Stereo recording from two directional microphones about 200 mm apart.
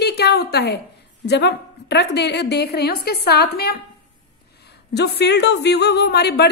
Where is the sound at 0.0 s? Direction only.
55° left (ahead or behind).